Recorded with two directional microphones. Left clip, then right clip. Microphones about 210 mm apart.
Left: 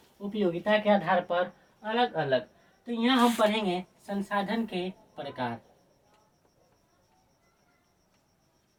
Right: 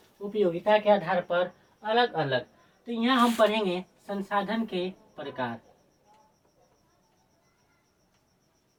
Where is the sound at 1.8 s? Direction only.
10° right (ahead or behind).